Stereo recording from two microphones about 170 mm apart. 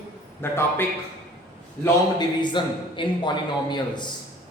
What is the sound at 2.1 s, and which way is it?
A man's voice, 25° left (ahead or behind).